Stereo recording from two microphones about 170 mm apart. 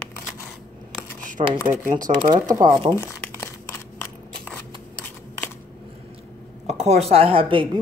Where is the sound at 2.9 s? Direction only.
15° left (ahead or behind).